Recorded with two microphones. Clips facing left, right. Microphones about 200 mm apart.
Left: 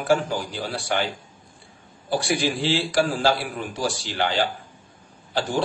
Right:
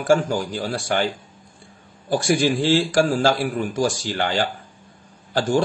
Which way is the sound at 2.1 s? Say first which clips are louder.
Right 4 dB; 45° right (ahead or behind).